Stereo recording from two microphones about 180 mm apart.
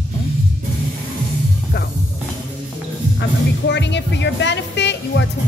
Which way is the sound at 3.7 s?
75° left (ahead or behind).